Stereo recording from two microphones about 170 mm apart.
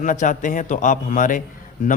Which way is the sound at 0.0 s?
50° left (ahead or behind).